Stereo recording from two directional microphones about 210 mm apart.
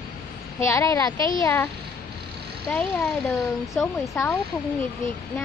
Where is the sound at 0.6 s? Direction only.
15° left (ahead or behind).